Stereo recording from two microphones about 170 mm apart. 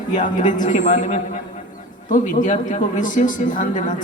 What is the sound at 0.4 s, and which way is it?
A man's voice, 45° left (ahead or behind).